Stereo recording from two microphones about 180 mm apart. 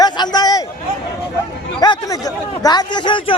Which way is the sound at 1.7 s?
20° left (ahead or behind).